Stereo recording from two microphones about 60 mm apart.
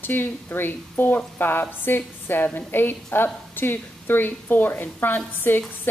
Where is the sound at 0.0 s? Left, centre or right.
Left.